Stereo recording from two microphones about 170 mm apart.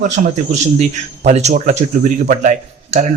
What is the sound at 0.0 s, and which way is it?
Speech, 50° right (ahead or behind).